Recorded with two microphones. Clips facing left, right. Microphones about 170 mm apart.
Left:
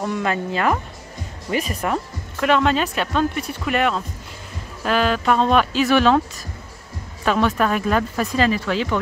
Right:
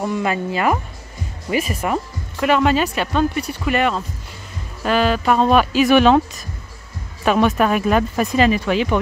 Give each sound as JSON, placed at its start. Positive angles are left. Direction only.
{"t": 0.0, "sound": "speech", "side_deg": -5}